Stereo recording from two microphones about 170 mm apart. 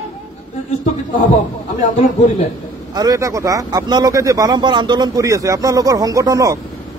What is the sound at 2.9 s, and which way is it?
Speech, 20° right (ahead or behind).